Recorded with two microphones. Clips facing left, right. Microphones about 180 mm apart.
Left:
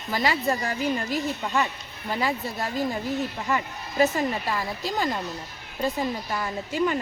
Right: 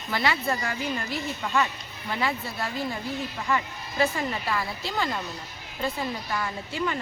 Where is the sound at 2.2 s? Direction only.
40° left (ahead or behind).